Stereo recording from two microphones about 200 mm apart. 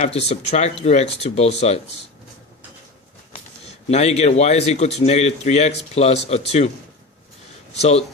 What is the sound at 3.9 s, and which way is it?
Speech, 35° left (ahead or behind).